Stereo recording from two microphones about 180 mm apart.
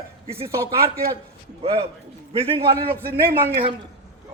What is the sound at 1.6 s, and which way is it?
A man's voice, 30° right (ahead or behind).